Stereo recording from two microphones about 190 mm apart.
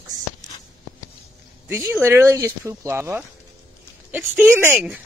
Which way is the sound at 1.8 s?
15° right (ahead or behind).